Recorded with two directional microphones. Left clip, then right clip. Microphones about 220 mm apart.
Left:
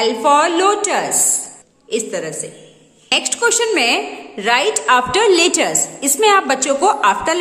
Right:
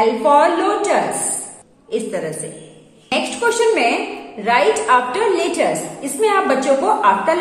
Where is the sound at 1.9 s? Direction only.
30° left (ahead or behind).